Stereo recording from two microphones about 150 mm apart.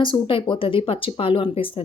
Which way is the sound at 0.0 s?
35° left (ahead or behind).